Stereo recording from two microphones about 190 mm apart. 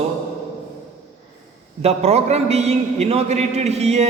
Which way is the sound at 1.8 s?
35° right (ahead or behind).